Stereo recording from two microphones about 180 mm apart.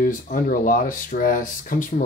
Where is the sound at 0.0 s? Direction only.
50° left (ahead or behind).